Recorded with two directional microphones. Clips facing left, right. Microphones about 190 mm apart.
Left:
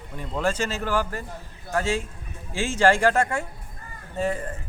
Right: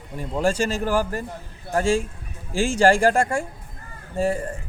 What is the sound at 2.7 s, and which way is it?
Speech, 10° right (ahead or behind).